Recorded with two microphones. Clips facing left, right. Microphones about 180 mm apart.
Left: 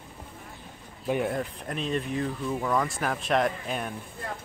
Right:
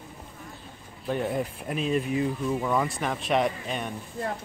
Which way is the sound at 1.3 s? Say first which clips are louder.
Right 2 dB; 5° right (ahead or behind).